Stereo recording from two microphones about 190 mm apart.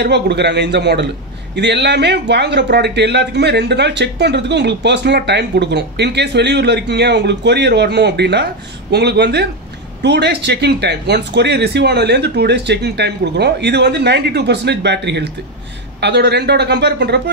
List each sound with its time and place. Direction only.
0.0 s a man's voice: 65° right (ahead or behind)